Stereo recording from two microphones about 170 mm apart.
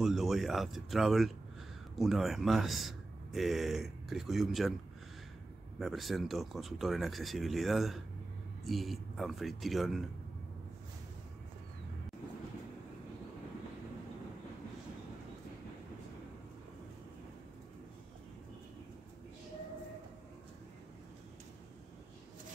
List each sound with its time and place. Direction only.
0.0 s speech: centre (ahead or behind)
5.8 s speech: centre (ahead or behind)